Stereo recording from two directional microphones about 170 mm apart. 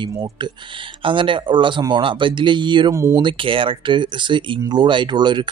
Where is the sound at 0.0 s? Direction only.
25° right (ahead or behind).